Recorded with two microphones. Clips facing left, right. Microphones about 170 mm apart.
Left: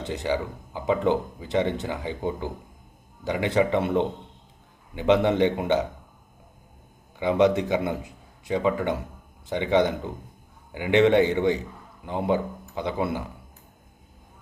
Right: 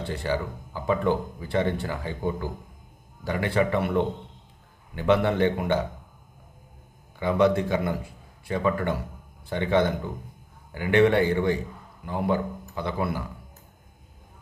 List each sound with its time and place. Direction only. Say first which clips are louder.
0.0 s a man's voice: left 1 dB; 15° left (ahead or behind)
7.2 s a man's voice: left 1 dB; 20° left (ahead or behind)